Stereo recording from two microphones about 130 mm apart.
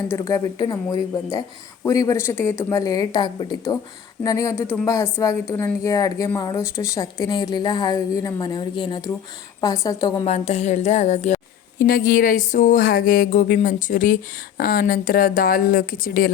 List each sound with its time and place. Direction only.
0.1 s a woman's voice: 25° left (ahead or behind)
1.9 s a woman's voice: 25° left (ahead or behind)
10.2 s a woman's voice: 55° left (ahead or behind)
11.9 s a sound: 90° left